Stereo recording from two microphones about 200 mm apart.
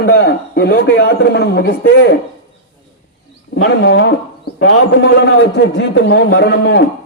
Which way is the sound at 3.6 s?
60° left (ahead or behind).